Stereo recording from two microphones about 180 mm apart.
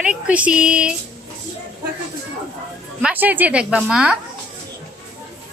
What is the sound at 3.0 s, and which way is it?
A woman's voice, 10° right (ahead or behind).